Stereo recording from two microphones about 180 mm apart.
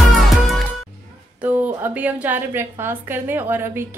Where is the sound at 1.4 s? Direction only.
10° right (ahead or behind).